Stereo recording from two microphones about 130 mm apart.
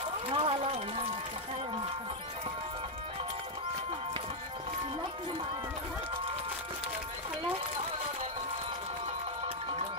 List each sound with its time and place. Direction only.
0.3 s run: 45° right (ahead or behind)